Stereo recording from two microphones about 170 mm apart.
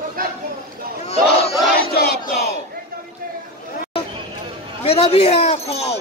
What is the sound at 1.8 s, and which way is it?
Battle cry, 70° left (ahead or behind).